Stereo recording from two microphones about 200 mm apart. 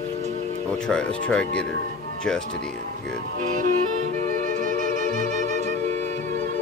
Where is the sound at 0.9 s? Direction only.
5° left (ahead or behind).